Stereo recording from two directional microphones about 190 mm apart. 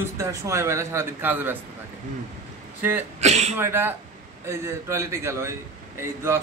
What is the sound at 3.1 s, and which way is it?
Speech, 35° right (ahead or behind).